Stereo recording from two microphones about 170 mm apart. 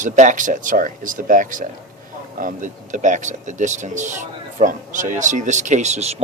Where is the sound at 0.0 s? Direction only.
50° right (ahead or behind).